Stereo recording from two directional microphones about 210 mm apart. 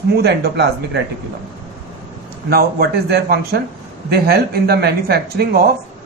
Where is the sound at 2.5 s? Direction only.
50° right (ahead or behind).